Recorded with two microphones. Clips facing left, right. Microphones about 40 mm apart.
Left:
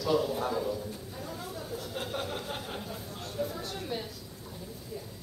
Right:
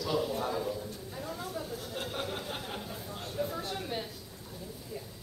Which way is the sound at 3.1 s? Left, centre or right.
Centre.